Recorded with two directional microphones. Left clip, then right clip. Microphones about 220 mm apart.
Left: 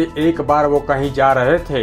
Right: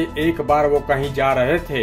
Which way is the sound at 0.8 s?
15° left (ahead or behind).